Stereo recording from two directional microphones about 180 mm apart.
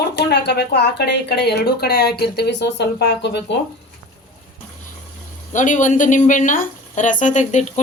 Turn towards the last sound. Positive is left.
turn(degrees=40)  # may be behind; listen again after turning